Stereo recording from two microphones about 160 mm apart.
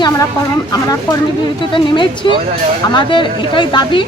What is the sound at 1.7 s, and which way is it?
Speech, 30° left (ahead or behind).